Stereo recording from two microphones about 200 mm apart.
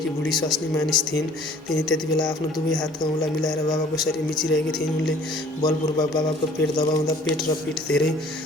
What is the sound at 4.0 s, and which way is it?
Speech, centre (ahead or behind).